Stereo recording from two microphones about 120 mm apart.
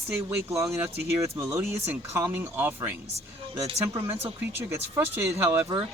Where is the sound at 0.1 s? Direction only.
20° right (ahead or behind).